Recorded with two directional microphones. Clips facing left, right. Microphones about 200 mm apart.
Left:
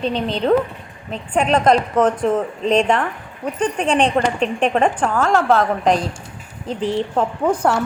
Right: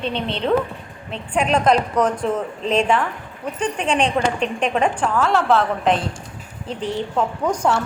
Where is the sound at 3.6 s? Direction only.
35° left (ahead or behind).